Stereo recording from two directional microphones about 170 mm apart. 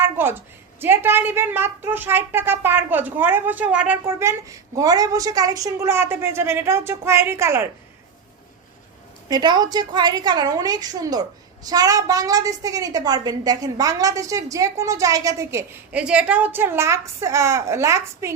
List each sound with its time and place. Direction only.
0.0 s a woman's voice: 15° right (ahead or behind)
9.3 s a woman's voice: 25° right (ahead or behind)